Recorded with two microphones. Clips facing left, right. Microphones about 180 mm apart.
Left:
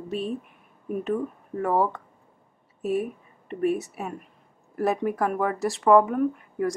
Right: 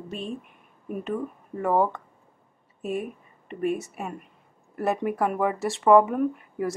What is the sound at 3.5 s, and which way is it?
Speech, centre (ahead or behind).